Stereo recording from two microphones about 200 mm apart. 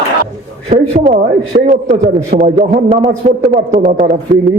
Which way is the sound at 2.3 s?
40° right (ahead or behind).